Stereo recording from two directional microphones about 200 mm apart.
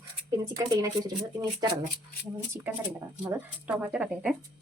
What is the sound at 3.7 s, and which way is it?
Speech, 5° right (ahead or behind).